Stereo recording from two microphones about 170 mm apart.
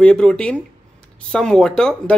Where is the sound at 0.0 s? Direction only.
5° left (ahead or behind).